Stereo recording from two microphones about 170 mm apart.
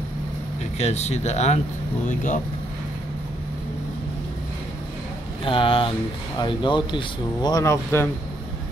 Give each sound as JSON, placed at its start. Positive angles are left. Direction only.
{"t": 0.7, "sound": "speech", "side_deg": 40}
{"t": 5.4, "sound": "speech", "side_deg": 30}